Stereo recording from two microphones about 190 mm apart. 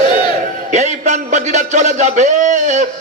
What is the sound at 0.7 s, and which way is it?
A man's voice, 40° right (ahead or behind).